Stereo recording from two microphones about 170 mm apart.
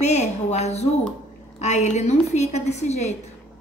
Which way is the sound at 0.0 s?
40° left (ahead or behind).